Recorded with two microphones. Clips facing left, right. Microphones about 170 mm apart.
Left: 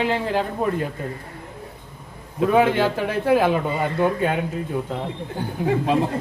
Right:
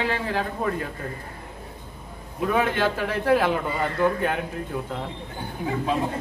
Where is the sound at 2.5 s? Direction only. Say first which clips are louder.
Left 5 dB; 15° left (ahead or behind).